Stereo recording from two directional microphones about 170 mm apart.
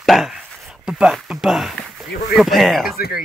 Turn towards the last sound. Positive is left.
turn(degrees=60)  # may be behind; listen again after turning